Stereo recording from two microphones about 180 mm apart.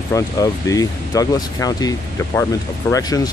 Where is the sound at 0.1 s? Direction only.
20° left (ahead or behind).